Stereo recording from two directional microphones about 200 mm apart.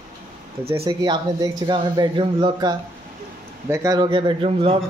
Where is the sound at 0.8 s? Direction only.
20° right (ahead or behind).